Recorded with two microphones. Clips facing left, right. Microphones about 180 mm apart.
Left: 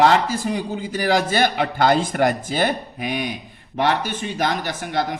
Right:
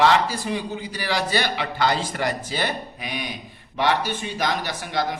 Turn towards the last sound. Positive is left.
turn(degrees=50)  # may be behind; listen again after turning